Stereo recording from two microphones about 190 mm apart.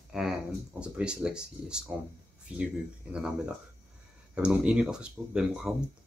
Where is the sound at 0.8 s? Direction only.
5° right (ahead or behind).